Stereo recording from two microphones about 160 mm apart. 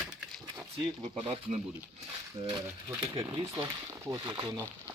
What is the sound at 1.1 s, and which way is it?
Speech, 40° right (ahead or behind).